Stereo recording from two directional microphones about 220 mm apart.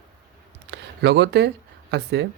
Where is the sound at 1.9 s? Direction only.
50° right (ahead or behind).